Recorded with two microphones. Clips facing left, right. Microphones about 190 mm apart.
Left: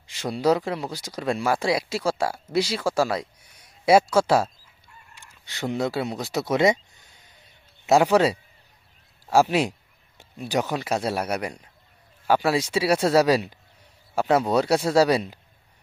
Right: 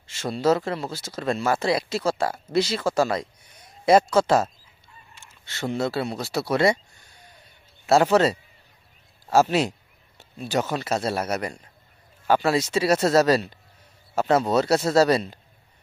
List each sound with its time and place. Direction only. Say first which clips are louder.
0.1 s speech: even; 15° left (ahead or behind)